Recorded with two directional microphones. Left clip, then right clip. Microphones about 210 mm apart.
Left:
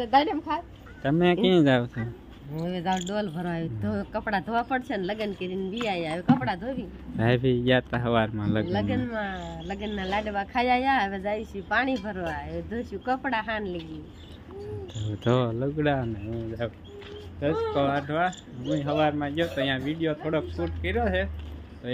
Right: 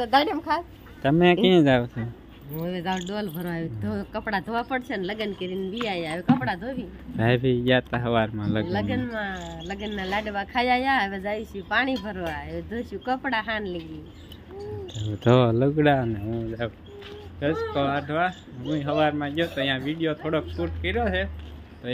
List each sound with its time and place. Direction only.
0.0 s speech: 25° right (ahead or behind); by 13.7 s 5° right (ahead or behind)
15.1 s speech: 20° right (ahead or behind)
16.5 s speech: 15° right (ahead or behind)